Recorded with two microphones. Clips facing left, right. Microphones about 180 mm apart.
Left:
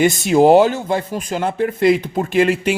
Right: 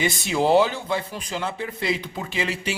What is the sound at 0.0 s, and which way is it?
A man's voice, 45° left (ahead or behind).